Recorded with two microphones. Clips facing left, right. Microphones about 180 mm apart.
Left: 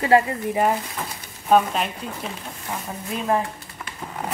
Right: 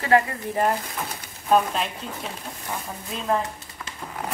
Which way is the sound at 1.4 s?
5° left (ahead or behind).